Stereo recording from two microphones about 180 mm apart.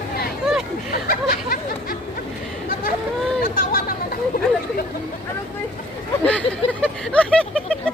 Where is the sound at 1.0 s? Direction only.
55° left (ahead or behind).